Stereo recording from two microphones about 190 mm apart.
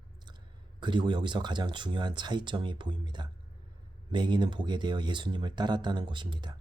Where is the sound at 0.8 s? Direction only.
25° right (ahead or behind).